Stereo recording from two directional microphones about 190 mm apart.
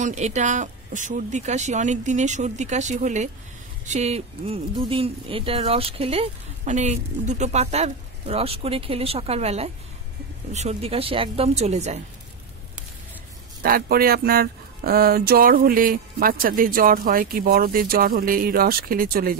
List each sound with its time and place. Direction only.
0.0 s speech: 40° right (ahead or behind)
13.6 s speech: 50° right (ahead or behind)